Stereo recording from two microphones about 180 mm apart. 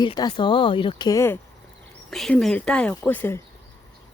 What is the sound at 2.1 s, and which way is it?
Speech, centre (ahead or behind).